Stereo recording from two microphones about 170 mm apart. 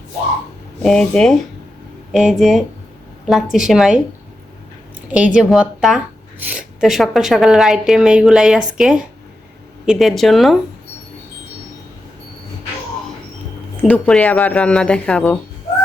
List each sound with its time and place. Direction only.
0.8 s a woman's voice: 5° left (ahead or behind)
5.1 s a woman's voice: 5° right (ahead or behind)
13.8 s speech: 10° left (ahead or behind)